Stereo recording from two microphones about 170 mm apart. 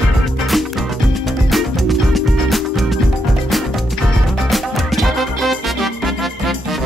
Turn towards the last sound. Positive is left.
turn(degrees=0)  # may be behind; listen again after turning